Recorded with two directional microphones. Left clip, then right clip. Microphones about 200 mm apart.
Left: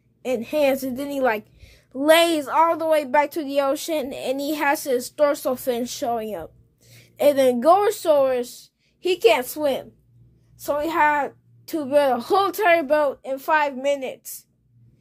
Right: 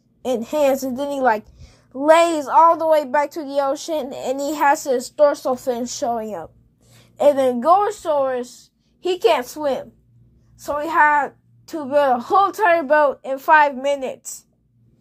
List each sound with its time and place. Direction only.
0.2 s a woman's voice: 10° right (ahead or behind)
3.1 s a woman's voice: 15° left (ahead or behind)
7.0 s a sound: centre (ahead or behind)
7.6 s a woman's voice: 20° left (ahead or behind)
9.0 s a woman's voice: centre (ahead or behind)
12.8 s a woman's voice: 15° right (ahead or behind)